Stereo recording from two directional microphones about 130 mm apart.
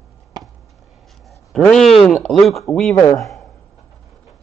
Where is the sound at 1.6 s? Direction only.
5° left (ahead or behind).